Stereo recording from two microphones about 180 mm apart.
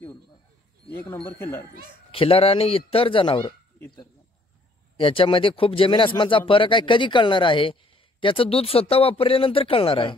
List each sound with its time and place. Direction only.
1.3 s speech: 15° left (ahead or behind)
2.0 s speech: 30° left (ahead or behind)
4.9 s speech: 30° left (ahead or behind)